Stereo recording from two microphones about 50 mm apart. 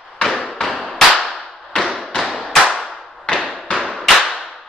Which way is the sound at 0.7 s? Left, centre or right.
Centre.